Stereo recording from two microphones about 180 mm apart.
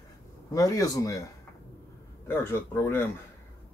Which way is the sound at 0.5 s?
20° left (ahead or behind).